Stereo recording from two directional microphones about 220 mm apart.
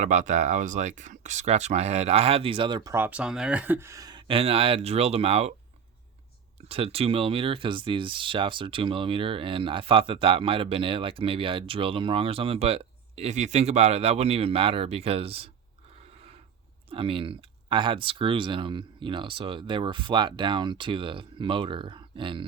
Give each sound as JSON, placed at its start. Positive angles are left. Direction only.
{"t": 0.0, "sound": "speech", "side_deg": -35}
{"t": 6.7, "sound": "speech", "side_deg": -25}
{"t": 16.9, "sound": "speech", "side_deg": -25}